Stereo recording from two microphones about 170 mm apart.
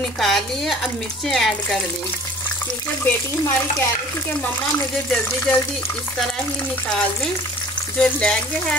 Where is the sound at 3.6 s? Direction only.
10° left (ahead or behind).